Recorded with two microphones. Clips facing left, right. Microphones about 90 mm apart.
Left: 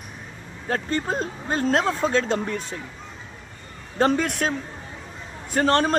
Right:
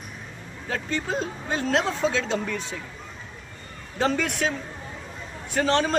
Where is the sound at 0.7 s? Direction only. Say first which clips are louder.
Left 3 dB; 45° left (ahead or behind).